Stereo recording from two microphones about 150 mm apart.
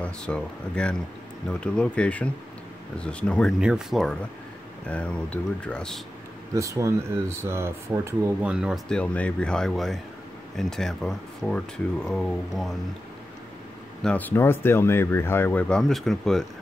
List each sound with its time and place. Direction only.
0.0 s speech: 5° left (ahead or behind)
3.5 s speech: 5° right (ahead or behind)
6.5 s speech: 20° right (ahead or behind)
8.5 s speech: 5° right (ahead or behind)
8.8 s speech: 5° left (ahead or behind)
14.0 s speech: 10° left (ahead or behind)